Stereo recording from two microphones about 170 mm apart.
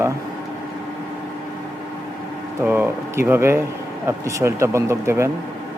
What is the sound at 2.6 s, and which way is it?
Speech, 10° right (ahead or behind).